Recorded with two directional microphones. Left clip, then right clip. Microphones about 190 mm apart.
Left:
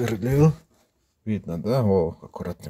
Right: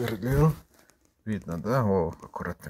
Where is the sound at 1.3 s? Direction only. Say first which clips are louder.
Left 4 dB; 20° left (ahead or behind).